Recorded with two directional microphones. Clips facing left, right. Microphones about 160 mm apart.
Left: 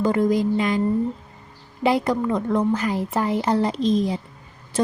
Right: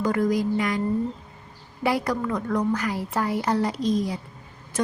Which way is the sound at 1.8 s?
20° left (ahead or behind).